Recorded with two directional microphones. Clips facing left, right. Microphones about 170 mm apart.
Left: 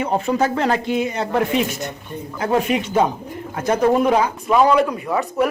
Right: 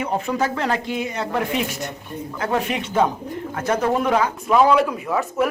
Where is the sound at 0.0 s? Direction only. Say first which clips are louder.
Left 3 dB; 30° left (ahead or behind).